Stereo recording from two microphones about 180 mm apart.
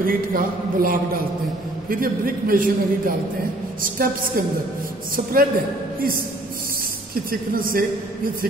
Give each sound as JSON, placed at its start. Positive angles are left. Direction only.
{"t": 0.0, "sound": "a man's voice", "side_deg": -50}
{"t": 7.2, "sound": "a man's voice", "side_deg": -55}